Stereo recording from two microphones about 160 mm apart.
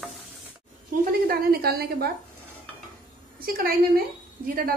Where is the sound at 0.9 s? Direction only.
65° right (ahead or behind).